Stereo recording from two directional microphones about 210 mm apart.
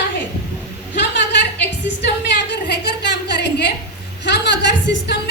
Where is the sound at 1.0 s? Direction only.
55° left (ahead or behind).